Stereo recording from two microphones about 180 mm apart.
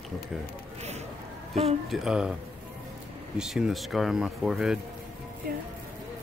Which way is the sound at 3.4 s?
Centre (ahead or behind).